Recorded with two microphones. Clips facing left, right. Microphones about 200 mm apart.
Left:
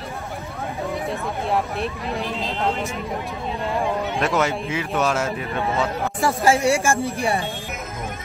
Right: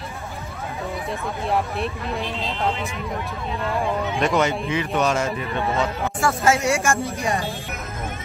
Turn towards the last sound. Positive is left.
turn(degrees=30)  # may be behind; listen again after turning